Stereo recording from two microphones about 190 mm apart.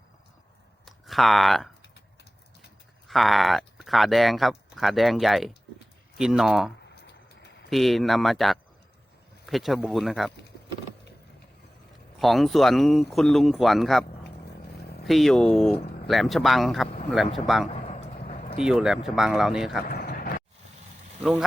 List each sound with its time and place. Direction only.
0.9 s speech: centre (ahead or behind)
3.1 s speech: centre (ahead or behind)
12.2 s speech: centre (ahead or behind)
15.0 s speech: centre (ahead or behind)
17.7 s a sound: 35° left (ahead or behind)
18.6 s speech: 5° right (ahead or behind)
19.9 s vehicle: 50° left (ahead or behind)